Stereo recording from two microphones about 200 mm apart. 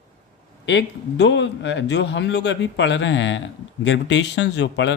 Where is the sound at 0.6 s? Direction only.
60° left (ahead or behind).